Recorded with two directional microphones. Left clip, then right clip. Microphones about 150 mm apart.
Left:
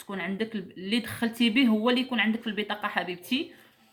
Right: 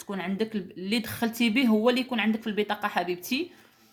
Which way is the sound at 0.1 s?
45° right (ahead or behind).